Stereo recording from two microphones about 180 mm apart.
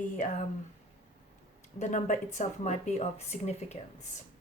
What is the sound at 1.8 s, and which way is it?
Speech, 45° left (ahead or behind).